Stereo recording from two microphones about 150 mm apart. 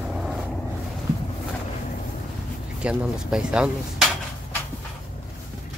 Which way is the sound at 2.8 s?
5° right (ahead or behind).